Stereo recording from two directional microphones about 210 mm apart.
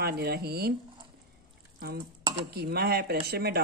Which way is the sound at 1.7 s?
45° right (ahead or behind).